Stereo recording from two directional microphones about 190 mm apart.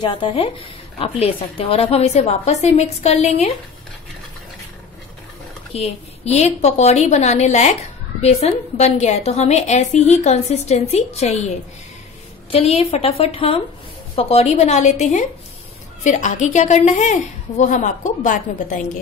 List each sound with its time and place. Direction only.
0.0 s a woman's voice: 25° left (ahead or behind)
5.7 s a woman's voice: 35° left (ahead or behind)